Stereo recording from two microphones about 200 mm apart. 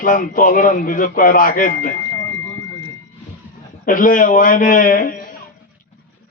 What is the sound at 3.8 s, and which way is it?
A man's voice, 40° left (ahead or behind).